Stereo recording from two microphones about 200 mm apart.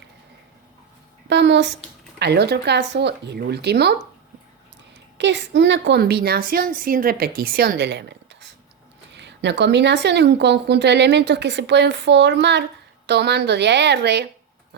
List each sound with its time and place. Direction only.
1.3 s speech: 60° right (ahead or behind)
5.1 s a woman's voice: 60° right (ahead or behind)